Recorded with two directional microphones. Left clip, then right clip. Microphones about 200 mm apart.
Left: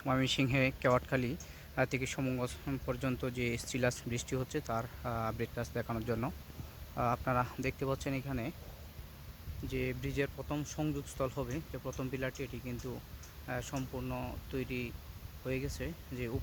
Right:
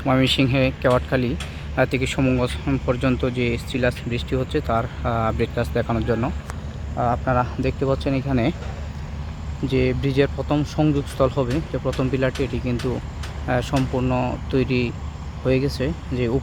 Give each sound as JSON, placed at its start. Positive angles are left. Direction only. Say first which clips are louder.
{"t": 0.0, "sound": "speech", "louder": "right 14 dB", "side_deg": 10}
{"t": 9.6, "sound": "speech", "louder": "right 17 dB", "side_deg": 10}